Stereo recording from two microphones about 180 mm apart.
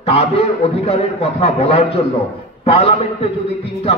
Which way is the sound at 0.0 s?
35° left (ahead or behind).